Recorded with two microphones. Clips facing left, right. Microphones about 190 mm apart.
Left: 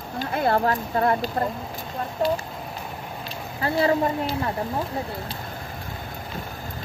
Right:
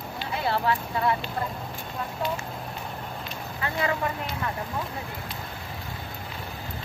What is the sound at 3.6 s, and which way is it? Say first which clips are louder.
Speech: left 7 dB; 35° left (ahead or behind).